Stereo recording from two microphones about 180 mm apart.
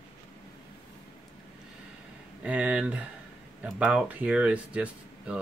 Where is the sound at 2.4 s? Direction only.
5° right (ahead or behind).